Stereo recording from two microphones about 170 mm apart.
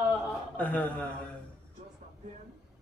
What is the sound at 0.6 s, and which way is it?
Speech, 10° left (ahead or behind).